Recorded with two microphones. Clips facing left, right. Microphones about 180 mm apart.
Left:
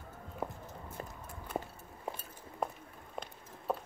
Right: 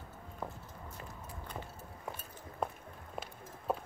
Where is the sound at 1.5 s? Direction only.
50° left (ahead or behind).